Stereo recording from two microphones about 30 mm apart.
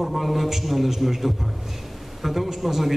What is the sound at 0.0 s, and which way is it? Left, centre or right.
A man's voice, centre.